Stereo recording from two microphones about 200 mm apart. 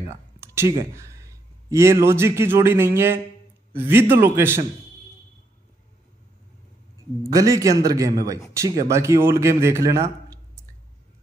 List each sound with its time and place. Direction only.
0.4 s a man's voice: 15° right (ahead or behind)
7.3 s a man's voice: 15° right (ahead or behind)